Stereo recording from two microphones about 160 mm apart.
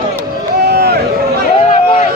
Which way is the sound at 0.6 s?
85° right.